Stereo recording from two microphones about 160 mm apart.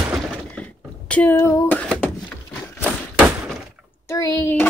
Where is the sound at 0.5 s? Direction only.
10° left (ahead or behind).